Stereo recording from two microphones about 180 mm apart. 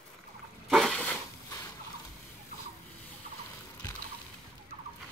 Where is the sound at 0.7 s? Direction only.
5° left (ahead or behind).